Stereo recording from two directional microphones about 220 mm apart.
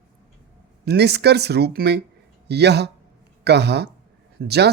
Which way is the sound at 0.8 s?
50° right (ahead or behind).